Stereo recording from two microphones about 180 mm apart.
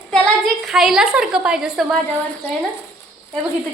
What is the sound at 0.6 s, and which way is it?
A woman's voice, centre (ahead or behind).